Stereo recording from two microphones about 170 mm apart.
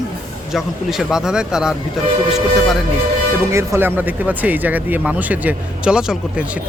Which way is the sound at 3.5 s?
15° right (ahead or behind).